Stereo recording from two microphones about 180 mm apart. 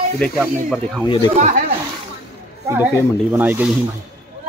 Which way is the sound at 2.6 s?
10° right (ahead or behind).